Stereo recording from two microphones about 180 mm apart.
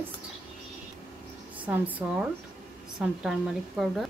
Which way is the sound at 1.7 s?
10° right (ahead or behind).